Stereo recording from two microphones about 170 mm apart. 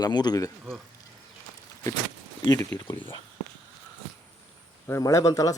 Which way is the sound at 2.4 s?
20° left (ahead or behind).